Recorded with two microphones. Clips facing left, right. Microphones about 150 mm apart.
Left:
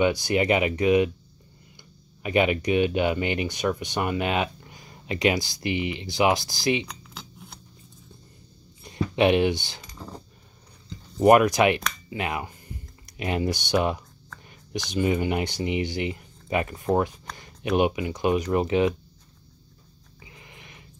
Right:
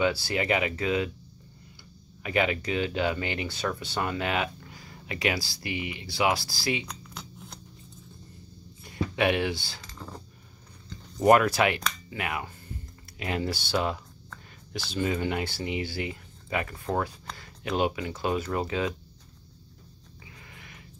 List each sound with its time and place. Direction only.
0.0 s speech: 20° left (ahead or behind)
2.2 s speech: 20° left (ahead or behind)
6.9 s a sound: centre (ahead or behind)
8.8 s keys jangling: 20° left (ahead or behind)
11.1 s speech: 20° left (ahead or behind)
20.2 s a sound: 20° left (ahead or behind)